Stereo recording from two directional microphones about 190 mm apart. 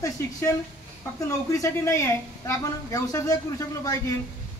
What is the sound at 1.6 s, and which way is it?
A man's voice, 15° left (ahead or behind).